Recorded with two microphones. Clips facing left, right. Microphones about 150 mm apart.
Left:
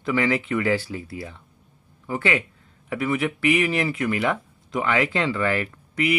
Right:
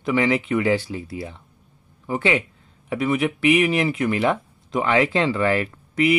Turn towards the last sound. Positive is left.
turn(degrees=-30)  # may be behind; listen again after turning